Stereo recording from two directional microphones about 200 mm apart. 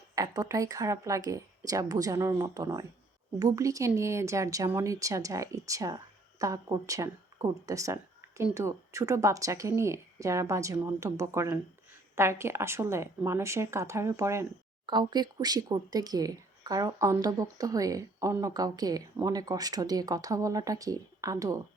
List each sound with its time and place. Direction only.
0.2 s speech: 15° right (ahead or behind)